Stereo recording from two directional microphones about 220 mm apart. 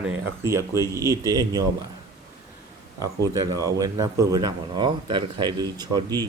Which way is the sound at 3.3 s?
15° right (ahead or behind).